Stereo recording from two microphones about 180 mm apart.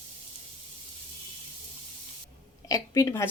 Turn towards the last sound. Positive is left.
turn(degrees=15)  # may be behind; listen again after turning